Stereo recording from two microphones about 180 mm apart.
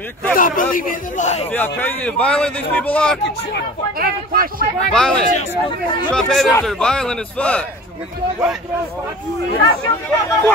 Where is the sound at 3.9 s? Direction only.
55° right (ahead or behind).